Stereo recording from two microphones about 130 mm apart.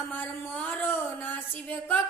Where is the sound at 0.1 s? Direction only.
15° left (ahead or behind).